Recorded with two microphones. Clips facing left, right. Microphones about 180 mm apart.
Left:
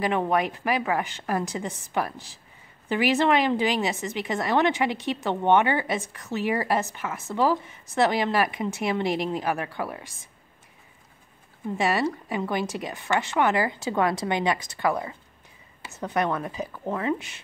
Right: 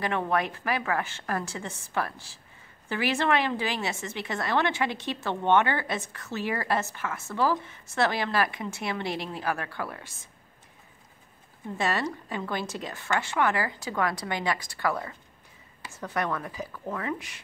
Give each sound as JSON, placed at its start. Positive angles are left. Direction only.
{"t": 0.0, "sound": "speech", "side_deg": 15}
{"t": 11.7, "sound": "a woman's voice", "side_deg": 15}